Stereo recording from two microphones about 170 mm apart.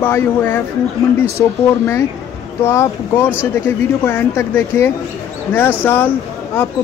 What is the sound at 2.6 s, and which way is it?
Speech, 15° left (ahead or behind).